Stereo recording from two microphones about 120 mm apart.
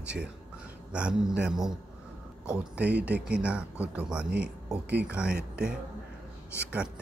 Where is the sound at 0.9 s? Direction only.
5° right (ahead or behind).